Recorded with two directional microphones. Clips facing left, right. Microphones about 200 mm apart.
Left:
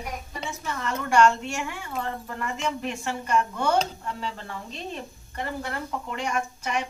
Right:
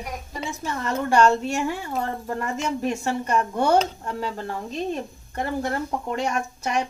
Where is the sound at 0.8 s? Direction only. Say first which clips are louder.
Right 2 dB; 35° right (ahead or behind).